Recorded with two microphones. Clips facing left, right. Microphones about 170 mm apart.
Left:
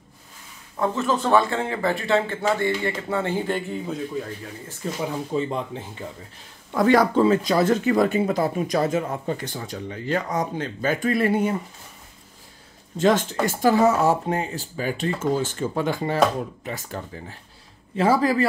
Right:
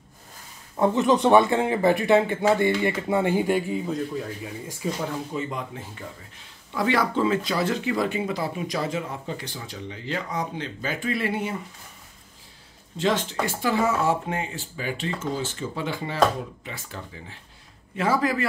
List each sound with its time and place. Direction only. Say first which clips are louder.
0.7 s speech: right 3 dB; 20° right (ahead or behind)
3.8 s speech: even; centre (ahead or behind)
5.3 s speech: left 5 dB; 30° left (ahead or behind)
6.7 s speech: left 6 dB; 45° left (ahead or behind)
12.9 s speech: left 5 dB; 45° left (ahead or behind)
17.9 s a man's voice: left 4 dB; 30° left (ahead or behind)